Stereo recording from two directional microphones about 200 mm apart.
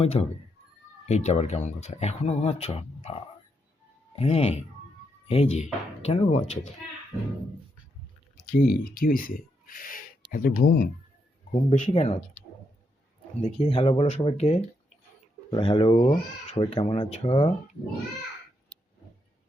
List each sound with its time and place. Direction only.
0.0 s speech: 30° left (ahead or behind)
8.4 s speech: 45° left (ahead or behind)
11.5 s speech: 35° left (ahead or behind)
13.4 s speech: 30° left (ahead or behind)